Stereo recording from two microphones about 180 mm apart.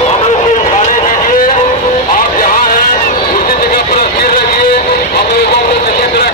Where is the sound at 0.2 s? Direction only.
40° left (ahead or behind); by 4.6 s 60° left (ahead or behind).